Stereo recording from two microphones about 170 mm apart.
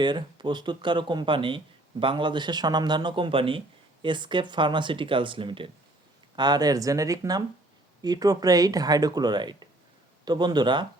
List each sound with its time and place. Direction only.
0.0 s speech: 25° right (ahead or behind)